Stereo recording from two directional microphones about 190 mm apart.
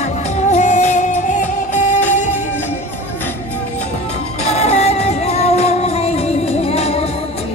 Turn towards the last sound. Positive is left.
turn(degrees=35)  # may be behind; listen again after turning